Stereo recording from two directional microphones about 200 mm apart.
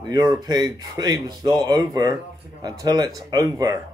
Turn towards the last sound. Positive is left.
turn(degrees=-20)  # may be behind; listen again after turning